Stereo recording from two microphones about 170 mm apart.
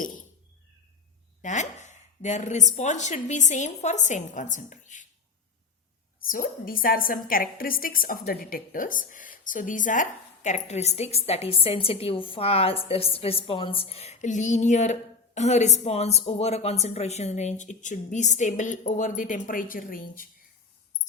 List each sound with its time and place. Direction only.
1.4 s a woman's voice: 45° left (ahead or behind)
6.2 s a woman's voice: 55° left (ahead or behind)